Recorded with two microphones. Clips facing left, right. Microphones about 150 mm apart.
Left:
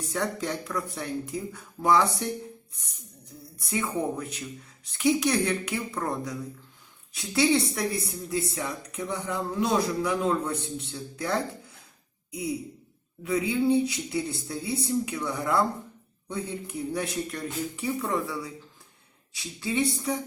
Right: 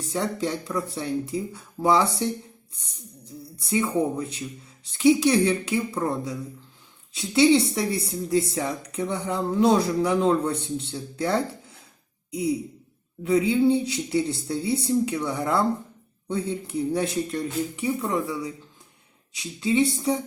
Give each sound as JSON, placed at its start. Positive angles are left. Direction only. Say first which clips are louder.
{"t": 0.1, "sound": "speech", "louder": "right 4 dB", "side_deg": -25}
{"t": 3.7, "sound": "speech", "louder": "right 5 dB", "side_deg": -25}
{"t": 7.1, "sound": "speech", "louder": "right 5 dB", "side_deg": -20}
{"t": 13.2, "sound": "speech", "louder": "right 5 dB", "side_deg": -25}